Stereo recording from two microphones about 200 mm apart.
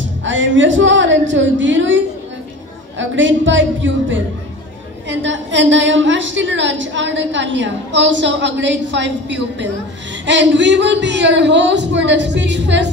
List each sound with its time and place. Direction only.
0.0 s a woman's voice: 70° right (ahead or behind)